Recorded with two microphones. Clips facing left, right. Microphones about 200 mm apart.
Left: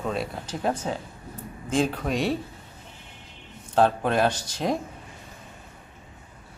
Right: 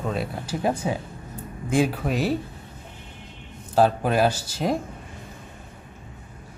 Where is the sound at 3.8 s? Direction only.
5° right (ahead or behind).